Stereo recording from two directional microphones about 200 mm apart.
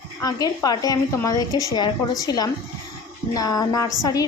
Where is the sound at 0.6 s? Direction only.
20° left (ahead or behind).